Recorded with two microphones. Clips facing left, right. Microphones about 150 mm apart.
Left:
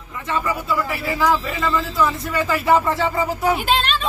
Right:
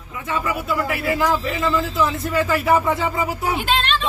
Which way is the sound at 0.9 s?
55° right (ahead or behind).